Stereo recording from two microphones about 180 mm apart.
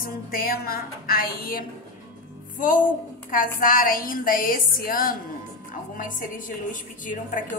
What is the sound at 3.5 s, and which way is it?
A woman's voice, 50° left (ahead or behind).